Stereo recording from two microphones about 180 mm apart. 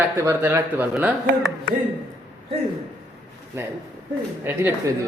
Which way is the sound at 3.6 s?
15° right (ahead or behind).